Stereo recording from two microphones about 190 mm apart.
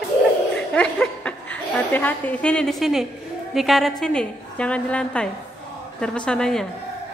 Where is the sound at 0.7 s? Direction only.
5° left (ahead or behind).